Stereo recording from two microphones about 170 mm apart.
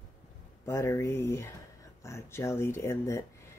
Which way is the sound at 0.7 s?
15° left (ahead or behind).